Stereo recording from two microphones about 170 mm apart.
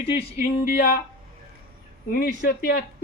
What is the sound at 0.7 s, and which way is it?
Speech, 60° left (ahead or behind).